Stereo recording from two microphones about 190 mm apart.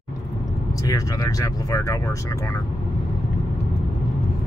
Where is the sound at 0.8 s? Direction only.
20° left (ahead or behind).